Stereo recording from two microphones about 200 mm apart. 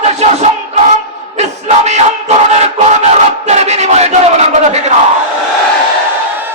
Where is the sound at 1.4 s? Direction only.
35° right (ahead or behind).